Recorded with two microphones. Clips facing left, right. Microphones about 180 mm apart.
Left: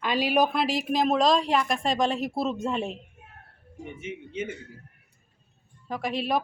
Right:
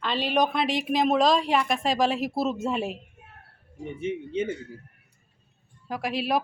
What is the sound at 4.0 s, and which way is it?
Speech, 30° right (ahead or behind).